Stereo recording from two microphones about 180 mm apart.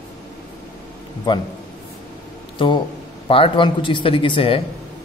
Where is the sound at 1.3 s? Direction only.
25° left (ahead or behind).